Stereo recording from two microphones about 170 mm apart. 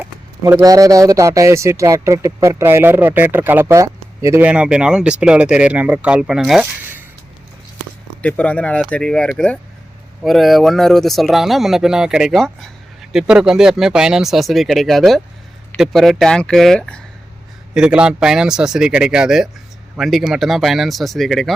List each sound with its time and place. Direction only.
0.0 s speech: 15° right (ahead or behind)
8.2 s speech: 10° left (ahead or behind)